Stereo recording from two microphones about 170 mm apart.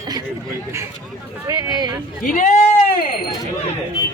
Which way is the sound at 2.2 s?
50° left (ahead or behind).